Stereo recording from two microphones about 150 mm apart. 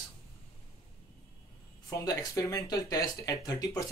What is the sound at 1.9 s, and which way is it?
Speech, 20° left (ahead or behind).